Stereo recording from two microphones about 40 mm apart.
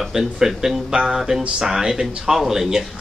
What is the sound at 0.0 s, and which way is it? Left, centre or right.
A man's voice, centre.